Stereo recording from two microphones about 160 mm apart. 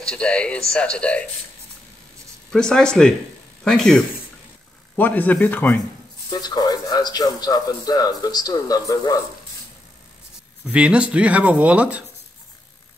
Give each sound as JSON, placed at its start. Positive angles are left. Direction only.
{"t": 0.0, "sound": "speech", "side_deg": 5}
{"t": 2.5, "sound": "speech", "side_deg": 5}
{"t": 6.3, "sound": "speech", "side_deg": 25}
{"t": 10.6, "sound": "speech", "side_deg": -5}